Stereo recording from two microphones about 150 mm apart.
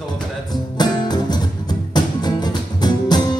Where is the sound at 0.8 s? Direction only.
25° left (ahead or behind).